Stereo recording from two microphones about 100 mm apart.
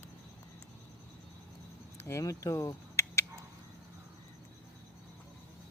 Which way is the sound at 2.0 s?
30° left (ahead or behind).